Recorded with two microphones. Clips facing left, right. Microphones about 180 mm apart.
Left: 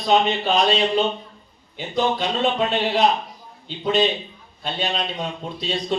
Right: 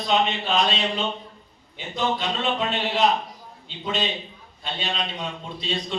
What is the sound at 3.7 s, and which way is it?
A man's voice, 40° left (ahead or behind).